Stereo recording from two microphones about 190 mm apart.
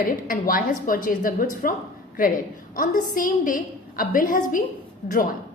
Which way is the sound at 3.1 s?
45° left (ahead or behind).